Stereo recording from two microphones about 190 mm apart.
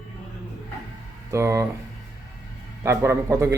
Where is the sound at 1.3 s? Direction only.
15° right (ahead or behind).